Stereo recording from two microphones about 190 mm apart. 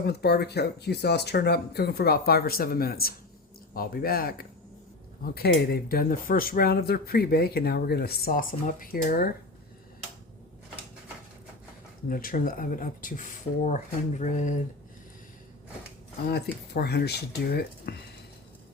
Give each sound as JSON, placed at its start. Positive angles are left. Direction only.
{"t": 0.0, "sound": "speech", "side_deg": 60}
{"t": 12.0, "sound": "speech", "side_deg": 45}
{"t": 16.3, "sound": "speech", "side_deg": 60}